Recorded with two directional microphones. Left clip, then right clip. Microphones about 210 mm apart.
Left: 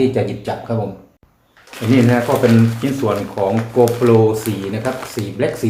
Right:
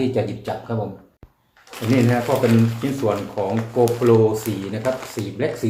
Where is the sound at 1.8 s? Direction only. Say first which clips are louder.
Left 4 dB; 15° right (ahead or behind).